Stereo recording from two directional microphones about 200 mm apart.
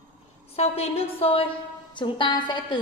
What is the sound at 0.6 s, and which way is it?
A woman's voice, 30° left (ahead or behind).